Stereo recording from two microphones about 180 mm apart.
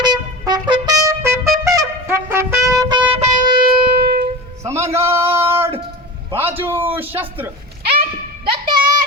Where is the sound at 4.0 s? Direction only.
65° right (ahead or behind).